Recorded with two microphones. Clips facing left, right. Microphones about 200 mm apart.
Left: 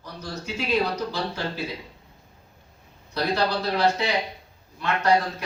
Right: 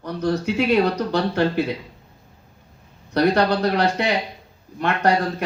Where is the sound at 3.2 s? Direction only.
65° right (ahead or behind).